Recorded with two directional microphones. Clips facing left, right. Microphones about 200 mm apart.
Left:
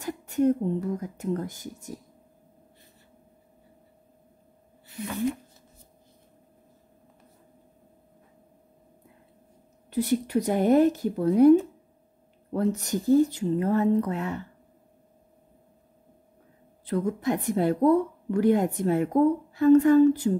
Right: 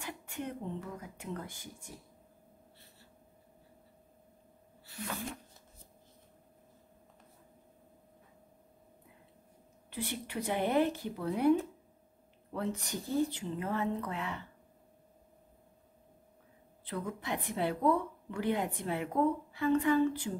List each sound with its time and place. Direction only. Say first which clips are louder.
0.0 s speech: left 16 dB; 40° left (ahead or behind)
9.8 s speech: left 14 dB; 40° left (ahead or behind)
12.5 s a woman's voice: left 10 dB; 40° left (ahead or behind)
16.8 s a woman's voice: left 12 dB; 45° left (ahead or behind)